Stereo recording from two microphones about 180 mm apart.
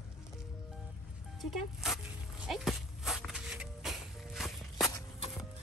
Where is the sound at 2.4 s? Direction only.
Centre (ahead or behind).